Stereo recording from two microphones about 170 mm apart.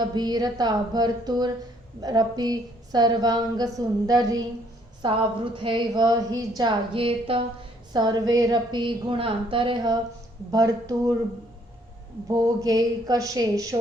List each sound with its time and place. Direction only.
0.0 s a woman's voice: 25° right (ahead or behind)
12.3 s a woman's voice: 25° right (ahead or behind)